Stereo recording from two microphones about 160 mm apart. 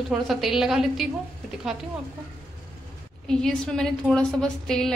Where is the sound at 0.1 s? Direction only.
Centre (ahead or behind).